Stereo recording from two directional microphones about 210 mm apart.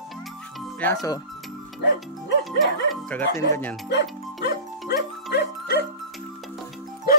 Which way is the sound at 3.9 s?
55° left (ahead or behind).